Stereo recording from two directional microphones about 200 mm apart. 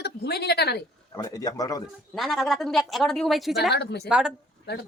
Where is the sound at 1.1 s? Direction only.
20° left (ahead or behind).